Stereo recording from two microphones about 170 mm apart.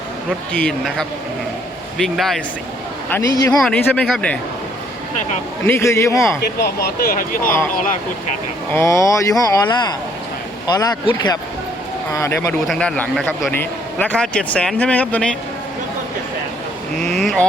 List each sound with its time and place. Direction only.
0.3 s a man's voice: centre (ahead or behind)
3.3 s speech: 20° left (ahead or behind)
3.6 s a man's voice: 5° left (ahead or behind)
5.6 s speech: 15° left (ahead or behind)
6.8 s speech: 60° left (ahead or behind)
8.7 s speech: 15° left (ahead or behind)
12.6 s speech: 5° left (ahead or behind)
17.0 s a man's voice: 5° left (ahead or behind)